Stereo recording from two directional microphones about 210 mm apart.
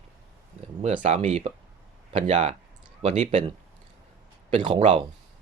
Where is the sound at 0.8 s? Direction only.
35° right (ahead or behind).